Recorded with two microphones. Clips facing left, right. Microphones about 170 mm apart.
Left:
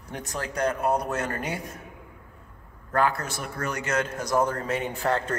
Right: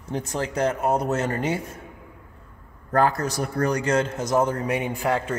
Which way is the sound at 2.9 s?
40° right (ahead or behind).